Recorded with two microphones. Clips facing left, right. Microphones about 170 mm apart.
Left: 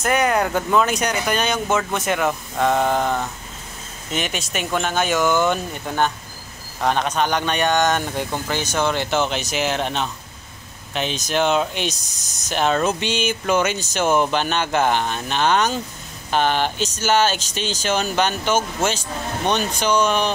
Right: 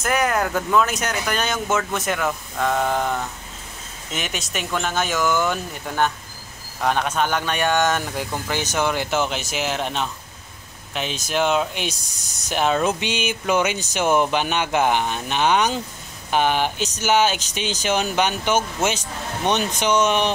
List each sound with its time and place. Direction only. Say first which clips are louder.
0.0 s a man's voice: left 2 dB; centre (ahead or behind)
5.1 s speech: left 3 dB; 20° left (ahead or behind)
7.0 s a man's voice: left 1 dB; 5° right (ahead or behind); by 20.3 s 20° right (ahead or behind)